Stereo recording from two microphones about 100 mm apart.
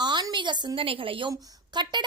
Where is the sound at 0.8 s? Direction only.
65° right (ahead or behind).